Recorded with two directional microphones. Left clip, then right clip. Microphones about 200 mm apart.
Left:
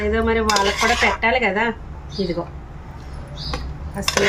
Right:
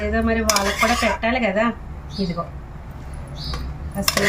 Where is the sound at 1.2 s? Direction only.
45° left (ahead or behind).